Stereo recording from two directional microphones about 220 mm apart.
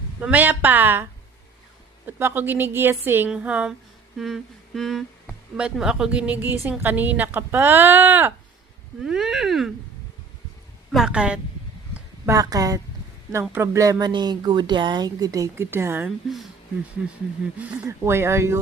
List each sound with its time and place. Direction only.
0.2 s speech: 5° right (ahead or behind)
2.0 s speech: 10° right (ahead or behind)
10.9 s speech: 5° right (ahead or behind)